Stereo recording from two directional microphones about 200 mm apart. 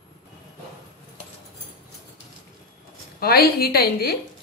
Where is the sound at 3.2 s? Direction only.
50° left (ahead or behind).